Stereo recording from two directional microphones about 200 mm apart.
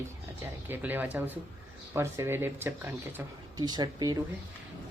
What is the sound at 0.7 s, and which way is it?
Speech, 10° right (ahead or behind).